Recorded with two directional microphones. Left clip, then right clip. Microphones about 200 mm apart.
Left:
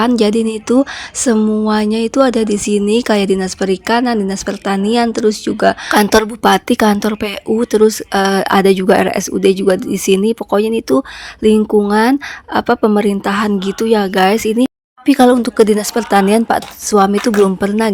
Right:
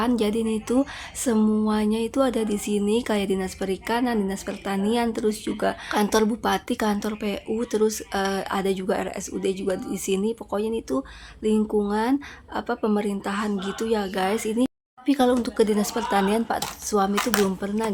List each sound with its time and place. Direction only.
0.0 s speech: 35° left (ahead or behind)
1.6 s speech: 35° left (ahead or behind)